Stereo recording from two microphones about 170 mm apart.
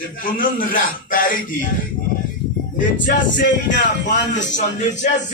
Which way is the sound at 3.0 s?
90° left.